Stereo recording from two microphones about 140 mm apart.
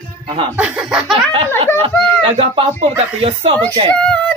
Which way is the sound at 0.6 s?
5° right (ahead or behind).